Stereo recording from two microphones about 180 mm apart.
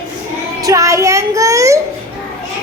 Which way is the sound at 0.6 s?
15° right (ahead or behind).